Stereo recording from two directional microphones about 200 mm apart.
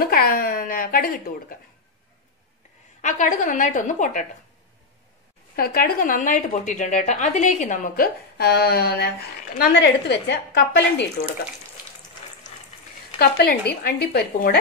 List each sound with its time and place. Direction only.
0.0 s speech: 50° left (ahead or behind)
3.0 s a woman's voice: 40° left (ahead or behind)
5.6 s a woman's voice: 45° left (ahead or behind)
13.2 s speech: 55° left (ahead or behind)